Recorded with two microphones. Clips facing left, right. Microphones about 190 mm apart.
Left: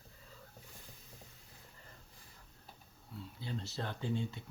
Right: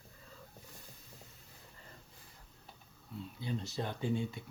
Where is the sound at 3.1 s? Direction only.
15° right (ahead or behind).